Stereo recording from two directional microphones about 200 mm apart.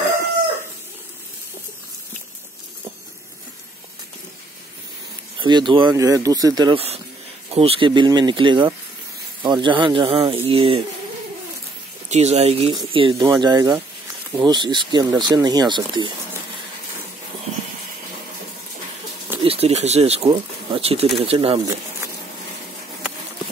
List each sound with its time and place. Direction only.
5.4 s speech: 25° right (ahead or behind)
12.1 s speech: 35° right (ahead or behind)
19.4 s speech: 30° right (ahead or behind)